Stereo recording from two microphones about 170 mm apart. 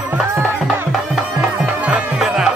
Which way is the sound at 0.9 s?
Centre (ahead or behind).